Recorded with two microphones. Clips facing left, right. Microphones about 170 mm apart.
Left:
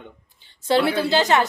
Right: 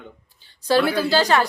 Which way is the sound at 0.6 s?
25° left (ahead or behind).